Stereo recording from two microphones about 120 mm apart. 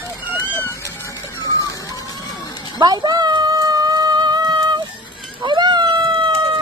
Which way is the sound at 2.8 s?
35° right (ahead or behind).